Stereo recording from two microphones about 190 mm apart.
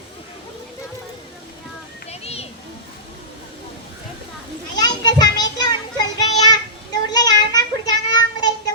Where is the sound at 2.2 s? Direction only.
30° left (ahead or behind).